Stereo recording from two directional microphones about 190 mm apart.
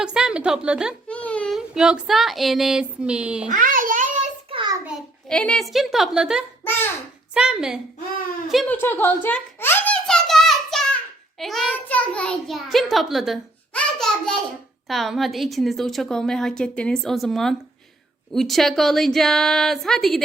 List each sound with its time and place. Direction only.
0.0 s a child's voice: 5° right (ahead or behind)
1.0 s child singing: 5° left (ahead or behind)
3.5 s a sound: 45° right (ahead or behind)
4.9 s a child's voice: centre (ahead or behind)
6.7 s a child's voice: 10° left (ahead or behind)
7.3 s a child's voice: 5° right (ahead or behind)
8.7 s a sound: 10° left (ahead or behind)
11.3 s a child's voice: centre (ahead or behind)